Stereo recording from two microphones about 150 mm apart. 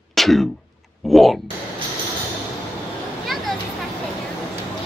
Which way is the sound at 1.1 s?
Centre (ahead or behind).